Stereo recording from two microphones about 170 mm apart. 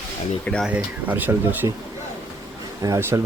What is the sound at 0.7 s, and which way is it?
Speech, 10° right (ahead or behind).